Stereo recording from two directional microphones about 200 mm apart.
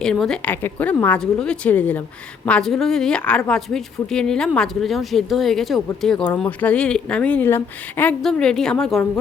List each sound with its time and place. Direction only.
0.0 s a woman's voice: 5° left (ahead or behind)